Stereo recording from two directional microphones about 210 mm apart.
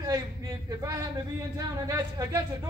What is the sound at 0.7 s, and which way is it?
Speech, 15° right (ahead or behind).